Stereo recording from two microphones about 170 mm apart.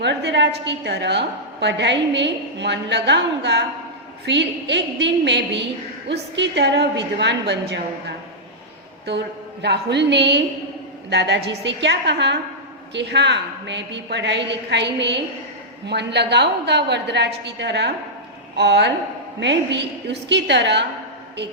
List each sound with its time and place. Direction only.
0.0 s a woman's voice: 90° right